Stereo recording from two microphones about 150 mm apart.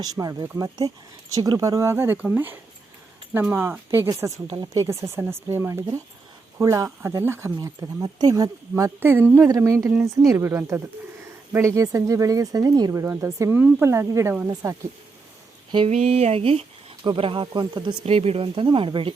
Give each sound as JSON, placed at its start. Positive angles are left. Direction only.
{"t": 0.0, "sound": "speech", "side_deg": -25}
{"t": 15.9, "sound": "speech", "side_deg": -45}